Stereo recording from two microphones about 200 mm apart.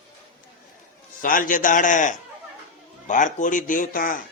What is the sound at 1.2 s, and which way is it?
A man's voice, 40° left (ahead or behind).